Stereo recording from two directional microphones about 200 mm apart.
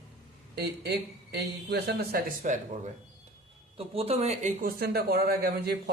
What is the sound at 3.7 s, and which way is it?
Speech, 30° right (ahead or behind).